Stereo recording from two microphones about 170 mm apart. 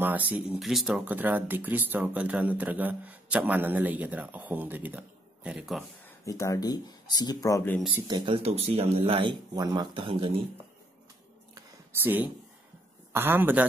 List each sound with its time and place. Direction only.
0.0 s speech: 10° right (ahead or behind)
6.0 s speech: 20° left (ahead or behind)
8.1 s speech: 35° right (ahead or behind)
11.5 s a sound: 10° right (ahead or behind)
13.1 s speech: 10° right (ahead or behind)